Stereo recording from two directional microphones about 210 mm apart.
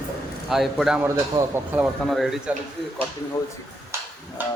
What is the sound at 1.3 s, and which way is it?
Speech, 20° right (ahead or behind).